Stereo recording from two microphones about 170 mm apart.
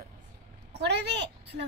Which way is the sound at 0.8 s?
80° right.